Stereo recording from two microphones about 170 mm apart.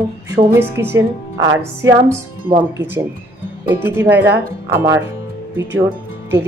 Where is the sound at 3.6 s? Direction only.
10° right (ahead or behind).